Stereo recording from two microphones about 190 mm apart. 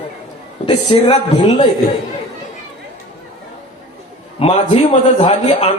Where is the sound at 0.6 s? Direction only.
25° left (ahead or behind).